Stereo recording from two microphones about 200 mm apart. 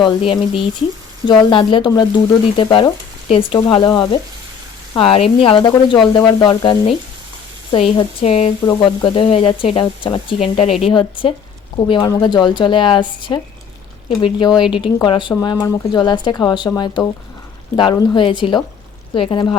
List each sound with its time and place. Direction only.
0.0 s speech: 25° left (ahead or behind)